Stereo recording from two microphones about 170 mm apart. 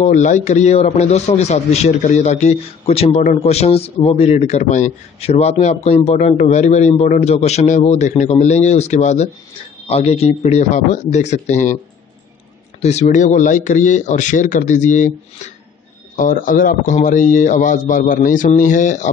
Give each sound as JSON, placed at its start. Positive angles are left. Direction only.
{"t": 0.0, "sound": "a man's voice", "side_deg": 45}
{"t": 12.8, "sound": "speech", "side_deg": 40}